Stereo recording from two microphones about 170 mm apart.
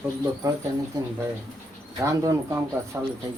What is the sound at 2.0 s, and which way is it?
Speech, 20° right (ahead or behind).